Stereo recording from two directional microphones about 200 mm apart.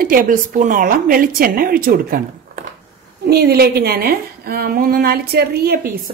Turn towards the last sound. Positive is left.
turn(degrees=-50)  # may be behind; listen again after turning